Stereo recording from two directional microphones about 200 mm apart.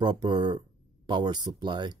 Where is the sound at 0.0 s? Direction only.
20° right (ahead or behind).